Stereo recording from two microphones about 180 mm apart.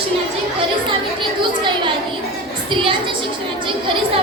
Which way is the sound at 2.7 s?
30° right (ahead or behind).